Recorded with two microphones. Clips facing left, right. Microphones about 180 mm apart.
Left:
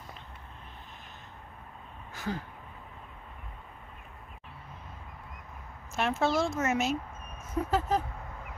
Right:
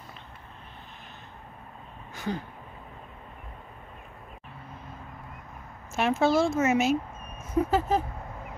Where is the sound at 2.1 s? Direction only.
5° left (ahead or behind).